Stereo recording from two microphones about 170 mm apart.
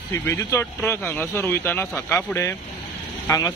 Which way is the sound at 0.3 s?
15° left (ahead or behind).